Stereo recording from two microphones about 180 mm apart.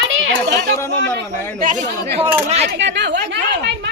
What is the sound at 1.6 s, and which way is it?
Speech, 45° right (ahead or behind).